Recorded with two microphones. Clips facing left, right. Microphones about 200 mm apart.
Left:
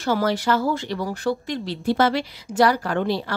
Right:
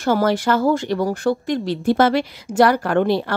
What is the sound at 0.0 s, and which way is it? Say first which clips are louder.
Speech: right 4 dB; 50° right (ahead or behind).